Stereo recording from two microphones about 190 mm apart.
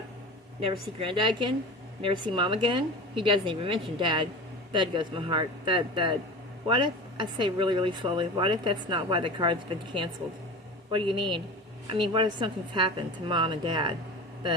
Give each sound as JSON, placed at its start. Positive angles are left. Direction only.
{"t": 0.6, "sound": "speech", "side_deg": -30}